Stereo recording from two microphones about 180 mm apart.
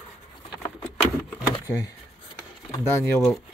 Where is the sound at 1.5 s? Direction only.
20° left (ahead or behind).